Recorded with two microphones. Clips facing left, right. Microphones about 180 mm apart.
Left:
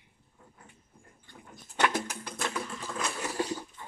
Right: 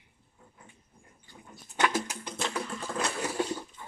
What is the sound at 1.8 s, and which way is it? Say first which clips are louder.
Music: even; 55° left (ahead or behind).